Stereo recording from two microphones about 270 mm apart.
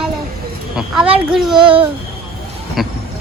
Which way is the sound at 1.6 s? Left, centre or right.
Centre.